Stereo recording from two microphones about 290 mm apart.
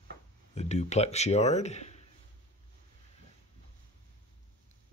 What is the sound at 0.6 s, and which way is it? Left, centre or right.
Speech, left.